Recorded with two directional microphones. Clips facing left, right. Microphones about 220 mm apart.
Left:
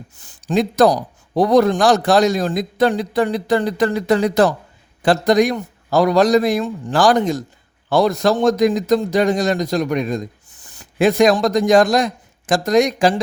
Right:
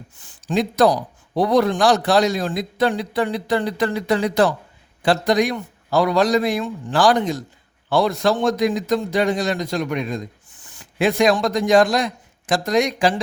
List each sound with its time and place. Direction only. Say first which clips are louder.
0.2 s a man's voice: left 3 dB; 45° left (ahead or behind)